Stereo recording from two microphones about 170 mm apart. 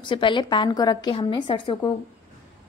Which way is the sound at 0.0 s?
30° left (ahead or behind).